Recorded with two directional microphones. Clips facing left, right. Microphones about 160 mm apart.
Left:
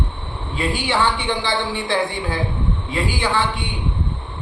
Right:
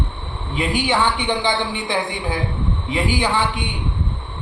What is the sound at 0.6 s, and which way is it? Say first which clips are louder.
A man's voice: right 1 dB; 20° right (ahead or behind).